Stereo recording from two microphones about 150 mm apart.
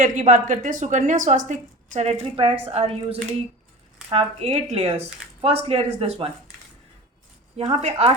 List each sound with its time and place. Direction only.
0.0 s a woman's voice: 60° right (ahead or behind); by 6.3 s 40° right (ahead or behind)
7.5 s a woman's voice: 45° right (ahead or behind)